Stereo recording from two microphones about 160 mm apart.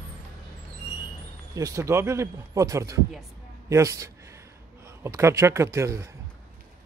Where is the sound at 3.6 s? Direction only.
20° right (ahead or behind).